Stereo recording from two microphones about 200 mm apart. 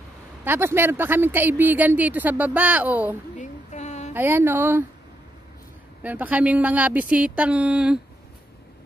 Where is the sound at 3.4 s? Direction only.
35° left (ahead or behind).